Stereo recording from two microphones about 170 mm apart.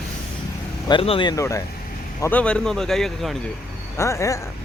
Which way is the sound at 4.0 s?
15° left (ahead or behind).